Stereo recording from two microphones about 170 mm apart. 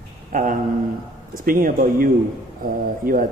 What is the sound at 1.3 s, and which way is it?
A man's voice, 55° right (ahead or behind).